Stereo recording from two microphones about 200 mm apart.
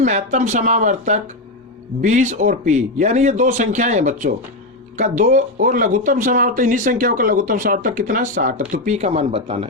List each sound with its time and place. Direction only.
0.0 s speech: 35° right (ahead or behind)